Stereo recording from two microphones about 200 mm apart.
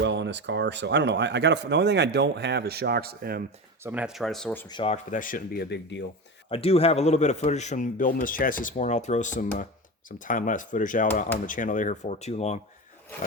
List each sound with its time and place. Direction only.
0.0 s speech: 60° right (ahead or behind)
3.8 s speech: 5° right (ahead or behind)
4.7 s speech: 25° left (ahead or behind)
5.1 s speech: 45° left (ahead or behind)
6.5 s a man's voice: 30° left (ahead or behind)